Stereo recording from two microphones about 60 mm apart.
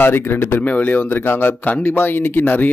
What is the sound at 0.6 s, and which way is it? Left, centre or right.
A man's voice, left.